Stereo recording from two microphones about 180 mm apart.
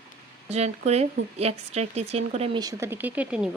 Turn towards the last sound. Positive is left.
turn(degrees=-5)  # may be behind; listen again after turning